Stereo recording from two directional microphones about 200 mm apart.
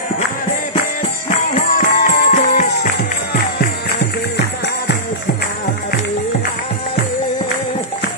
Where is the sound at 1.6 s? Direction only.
40° left (ahead or behind); by 5.0 s 55° left (ahead or behind).